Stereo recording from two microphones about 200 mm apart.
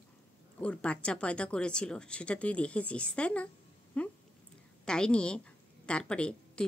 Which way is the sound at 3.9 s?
5° left (ahead or behind).